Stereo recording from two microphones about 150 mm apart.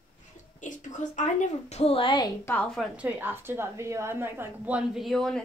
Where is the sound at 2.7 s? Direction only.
5° right (ahead or behind).